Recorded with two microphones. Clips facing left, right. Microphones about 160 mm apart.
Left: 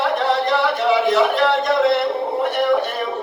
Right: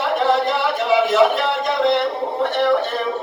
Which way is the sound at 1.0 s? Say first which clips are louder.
Even; centre (ahead or behind).